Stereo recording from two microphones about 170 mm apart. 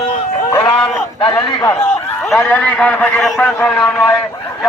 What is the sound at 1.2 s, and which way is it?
Speech, 25° left (ahead or behind).